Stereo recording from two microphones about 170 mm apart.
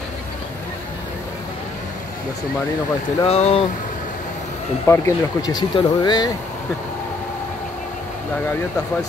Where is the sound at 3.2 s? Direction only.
35° left (ahead or behind).